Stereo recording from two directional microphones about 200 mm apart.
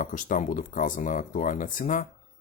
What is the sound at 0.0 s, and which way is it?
Speech, 40° left (ahead or behind).